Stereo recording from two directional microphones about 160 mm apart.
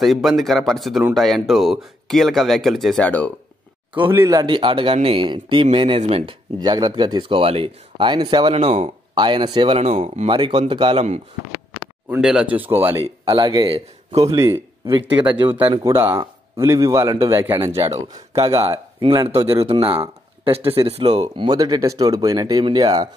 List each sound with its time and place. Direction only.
0.0 s speech: centre (ahead or behind)
4.1 s speech: 20° right (ahead or behind)
8.5 s speech: 45° right (ahead or behind)
9.1 s speech: 30° right (ahead or behind); by 10.3 s 45° right (ahead or behind)
10.3 s speech: 30° right (ahead or behind)
12.1 s speech: 5° right (ahead or behind)
13.0 s speech: 35° right (ahead or behind)
15.8 s speech: 15° right (ahead or behind)
17.7 s speech: 40° right (ahead or behind)
21.2 s speech: 25° right (ahead or behind)